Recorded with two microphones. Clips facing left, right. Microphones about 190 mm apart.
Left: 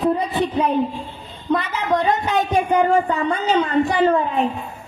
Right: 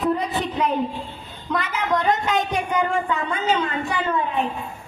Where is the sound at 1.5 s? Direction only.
30° left (ahead or behind).